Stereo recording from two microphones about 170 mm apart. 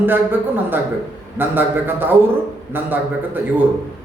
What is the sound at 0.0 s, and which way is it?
A man's voice, 10° right (ahead or behind).